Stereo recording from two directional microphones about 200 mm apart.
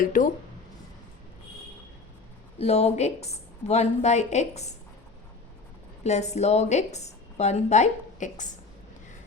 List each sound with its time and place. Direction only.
0.0 s speech: 40° left (ahead or behind)
2.6 s a woman's voice: 30° left (ahead or behind)
6.0 s a woman's voice: 35° left (ahead or behind)